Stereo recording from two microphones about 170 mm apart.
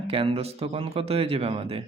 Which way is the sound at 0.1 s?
35° right (ahead or behind).